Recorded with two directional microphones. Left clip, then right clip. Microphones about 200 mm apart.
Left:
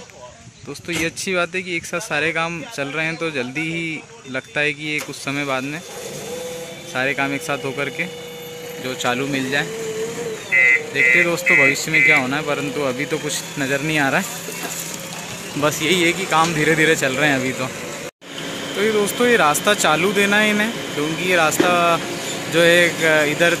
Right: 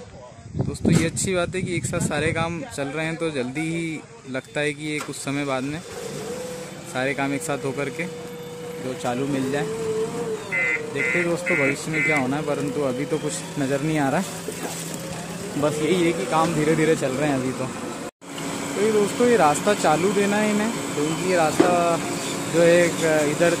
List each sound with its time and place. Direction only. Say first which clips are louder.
1.0 s speech: left 3 dB; 5° right (ahead or behind)
7.0 s speech: left 4 dB; 5° right (ahead or behind)
10.5 s a sound: left 10 dB; 45° right (ahead or behind)
11.5 s speech: left 10 dB; centre (ahead or behind)
15.6 s speech: left 4 dB; 5° right (ahead or behind)
19.2 s speech: left 3 dB; 5° right (ahead or behind)
20.7 s speech: left 2 dB; 50° right (ahead or behind)
21.3 s speech: left 3 dB; centre (ahead or behind)